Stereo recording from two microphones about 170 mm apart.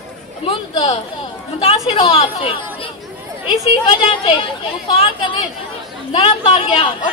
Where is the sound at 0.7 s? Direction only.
30° left (ahead or behind).